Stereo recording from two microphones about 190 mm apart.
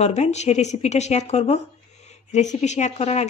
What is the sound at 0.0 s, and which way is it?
Speech, 35° left (ahead or behind).